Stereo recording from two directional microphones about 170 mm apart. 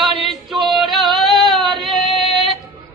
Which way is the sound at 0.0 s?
Centre (ahead or behind).